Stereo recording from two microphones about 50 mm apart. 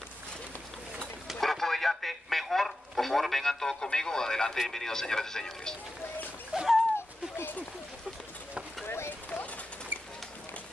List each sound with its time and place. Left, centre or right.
1.2 s radio: centre
4.6 s speech: centre
6.5 s a sound: centre
8.8 s speech: left